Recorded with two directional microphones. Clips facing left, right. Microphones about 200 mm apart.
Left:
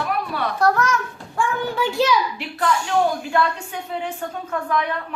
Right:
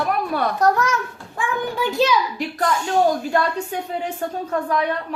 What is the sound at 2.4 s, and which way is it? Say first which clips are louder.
A woman's voice: right 1 dB; 40° right (ahead or behind).